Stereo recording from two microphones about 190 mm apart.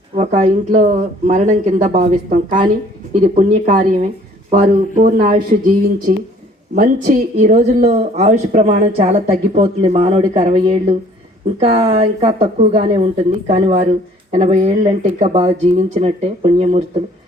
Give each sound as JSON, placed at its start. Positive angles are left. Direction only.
{"t": 0.2, "sound": "a woman's voice", "side_deg": -40}